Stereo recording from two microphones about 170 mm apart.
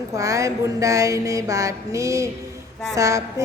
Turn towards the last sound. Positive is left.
turn(degrees=-20)  # may be behind; listen again after turning